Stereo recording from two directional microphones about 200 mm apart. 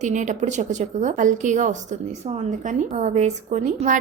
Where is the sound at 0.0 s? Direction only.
35° right (ahead or behind).